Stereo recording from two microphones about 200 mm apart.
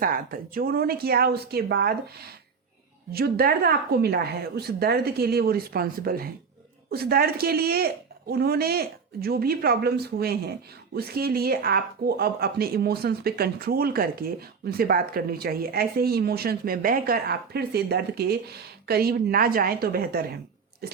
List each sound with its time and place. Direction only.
0.0 s speech: 45° right (ahead or behind)
3.1 s speech: 50° right (ahead or behind)